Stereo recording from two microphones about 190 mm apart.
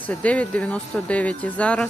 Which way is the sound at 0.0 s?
5° left (ahead or behind).